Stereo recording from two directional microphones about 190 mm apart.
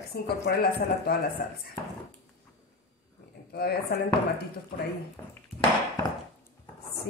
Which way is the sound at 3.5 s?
55° left (ahead or behind).